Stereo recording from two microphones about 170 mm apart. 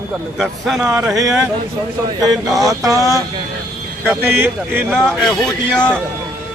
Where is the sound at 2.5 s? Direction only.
20° right (ahead or behind).